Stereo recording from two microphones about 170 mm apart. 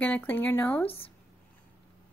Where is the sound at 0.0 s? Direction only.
10° left (ahead or behind).